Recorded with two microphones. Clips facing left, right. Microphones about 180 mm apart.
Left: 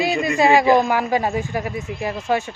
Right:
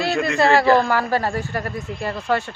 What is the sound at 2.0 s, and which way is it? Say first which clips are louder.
Speech: left 1 dB; 15° left (ahead or behind).